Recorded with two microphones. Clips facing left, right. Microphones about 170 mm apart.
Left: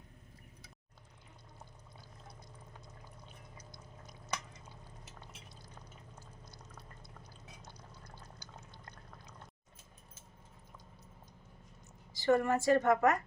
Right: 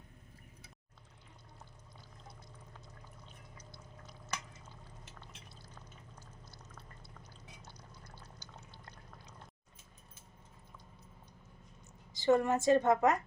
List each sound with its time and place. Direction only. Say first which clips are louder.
12.1 s a woman's voice: right 1 dB; 20° right (ahead or behind)